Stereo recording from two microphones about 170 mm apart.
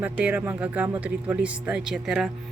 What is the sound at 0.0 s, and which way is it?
A woman's voice, 10° right (ahead or behind).